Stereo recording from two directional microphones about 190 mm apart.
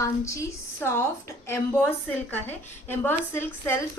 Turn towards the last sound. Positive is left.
turn(degrees=10)  # may be behind; listen again after turning